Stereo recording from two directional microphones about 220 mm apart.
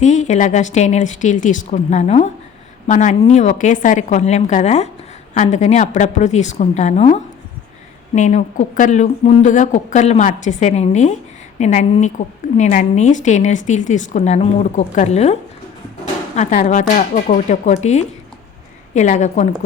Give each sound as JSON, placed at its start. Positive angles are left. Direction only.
{"t": 0.0, "sound": "a woman's voice", "side_deg": 30}